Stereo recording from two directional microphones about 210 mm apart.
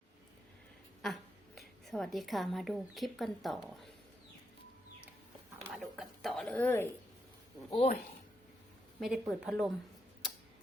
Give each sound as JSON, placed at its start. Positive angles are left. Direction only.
{"t": 1.0, "sound": "a woman's voice", "side_deg": 0}
{"t": 5.6, "sound": "a sound", "side_deg": -5}
{"t": 7.7, "sound": "speech", "side_deg": 30}
{"t": 9.0, "sound": "speech", "side_deg": 0}